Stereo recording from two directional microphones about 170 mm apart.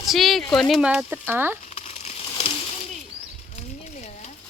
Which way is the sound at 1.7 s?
40° left (ahead or behind).